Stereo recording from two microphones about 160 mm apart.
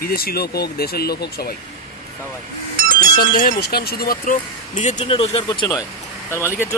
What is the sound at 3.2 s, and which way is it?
Speech, 70° left (ahead or behind).